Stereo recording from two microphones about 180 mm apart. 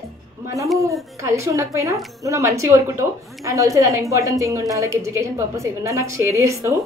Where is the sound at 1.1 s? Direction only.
15° right (ahead or behind).